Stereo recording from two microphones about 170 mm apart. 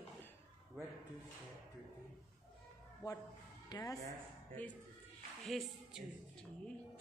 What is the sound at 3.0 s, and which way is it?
Speech, 20° left (ahead or behind).